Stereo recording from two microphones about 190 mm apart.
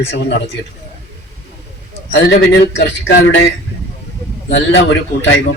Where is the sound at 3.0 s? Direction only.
85° left.